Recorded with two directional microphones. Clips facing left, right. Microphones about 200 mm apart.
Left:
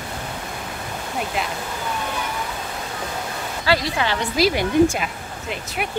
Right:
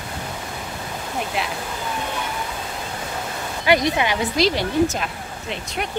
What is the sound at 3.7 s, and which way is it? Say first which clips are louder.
Speech: right 3 dB; 20° right (ahead or behind).